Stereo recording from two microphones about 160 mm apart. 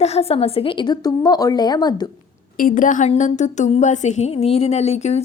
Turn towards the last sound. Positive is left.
turn(degrees=45)  # may be behind; listen again after turning